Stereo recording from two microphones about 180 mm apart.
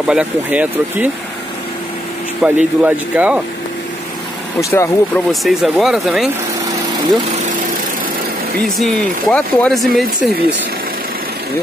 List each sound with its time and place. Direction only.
0.0 s speech: 5° right (ahead or behind)
2.4 s speech: 10° right (ahead or behind)
4.6 s speech: 15° left (ahead or behind)
5.3 s speech: centre (ahead or behind)
8.6 s speech: centre (ahead or behind)